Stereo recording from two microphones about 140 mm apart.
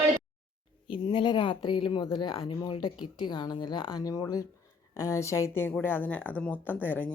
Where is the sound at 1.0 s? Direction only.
35° left (ahead or behind).